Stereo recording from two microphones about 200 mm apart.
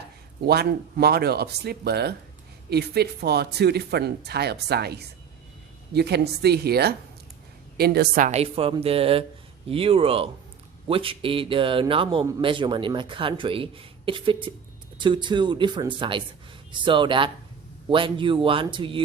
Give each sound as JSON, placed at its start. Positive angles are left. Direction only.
{"t": 0.4, "sound": "speech", "side_deg": -50}